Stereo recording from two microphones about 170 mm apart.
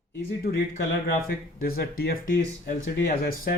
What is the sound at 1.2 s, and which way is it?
Speech, 60° left (ahead or behind).